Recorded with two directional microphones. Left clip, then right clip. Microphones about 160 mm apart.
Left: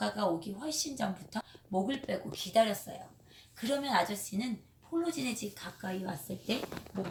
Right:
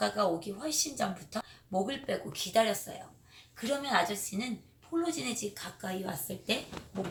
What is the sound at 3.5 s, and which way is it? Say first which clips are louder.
A woman's voice: right 1 dB; centre (ahead or behind).